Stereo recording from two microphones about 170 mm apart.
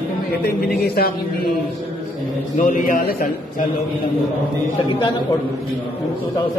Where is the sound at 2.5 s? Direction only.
55° left (ahead or behind).